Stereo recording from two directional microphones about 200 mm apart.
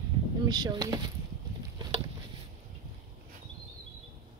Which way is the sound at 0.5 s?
20° right (ahead or behind).